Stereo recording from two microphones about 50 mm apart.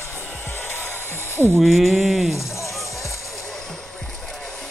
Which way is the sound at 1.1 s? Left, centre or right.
Left.